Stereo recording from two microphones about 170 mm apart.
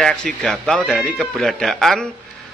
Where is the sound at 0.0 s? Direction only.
5° left (ahead or behind).